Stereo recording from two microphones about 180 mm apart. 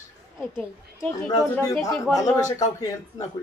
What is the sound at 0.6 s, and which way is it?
A man's voice, 10° left (ahead or behind).